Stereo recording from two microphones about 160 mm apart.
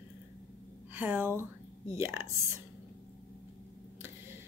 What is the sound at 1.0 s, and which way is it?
A woman's voice, 10° right (ahead or behind).